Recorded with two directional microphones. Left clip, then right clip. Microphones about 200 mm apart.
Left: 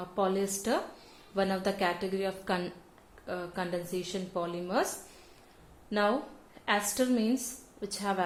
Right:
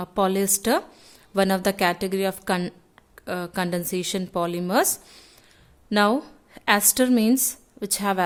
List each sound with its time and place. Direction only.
0.0 s a woman's voice: 45° right (ahead or behind)
5.9 s a woman's voice: 45° right (ahead or behind)